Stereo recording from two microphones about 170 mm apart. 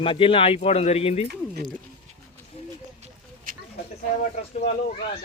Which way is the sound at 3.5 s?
55° right (ahead or behind).